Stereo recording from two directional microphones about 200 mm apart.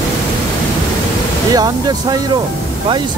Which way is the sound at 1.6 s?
20° right (ahead or behind).